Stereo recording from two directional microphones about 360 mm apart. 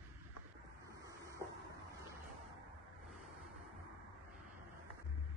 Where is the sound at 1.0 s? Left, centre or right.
Centre.